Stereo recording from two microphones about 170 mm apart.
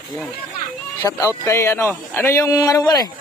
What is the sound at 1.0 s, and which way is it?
Speech, 20° left (ahead or behind).